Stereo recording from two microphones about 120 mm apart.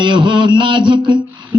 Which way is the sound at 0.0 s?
40° right (ahead or behind).